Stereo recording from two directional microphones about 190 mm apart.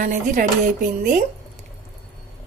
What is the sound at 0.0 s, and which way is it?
Speech, 45° right (ahead or behind).